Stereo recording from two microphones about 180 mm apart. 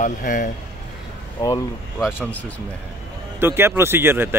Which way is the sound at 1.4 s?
25° left (ahead or behind).